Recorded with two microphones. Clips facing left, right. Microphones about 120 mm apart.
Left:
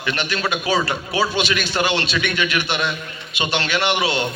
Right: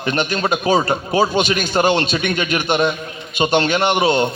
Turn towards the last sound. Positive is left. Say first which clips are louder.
# right 5 dB
turn(degrees=-45)  # may be behind; listen again after turning